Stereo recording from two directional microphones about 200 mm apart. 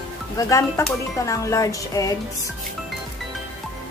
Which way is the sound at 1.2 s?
15° left (ahead or behind).